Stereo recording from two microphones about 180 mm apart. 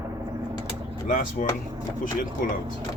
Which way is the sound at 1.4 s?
45° left (ahead or behind).